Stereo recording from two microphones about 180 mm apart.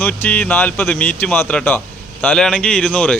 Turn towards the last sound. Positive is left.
turn(degrees=5)  # may be behind; listen again after turning